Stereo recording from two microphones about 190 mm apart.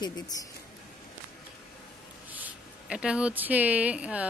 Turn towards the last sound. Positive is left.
turn(degrees=-5)  # may be behind; listen again after turning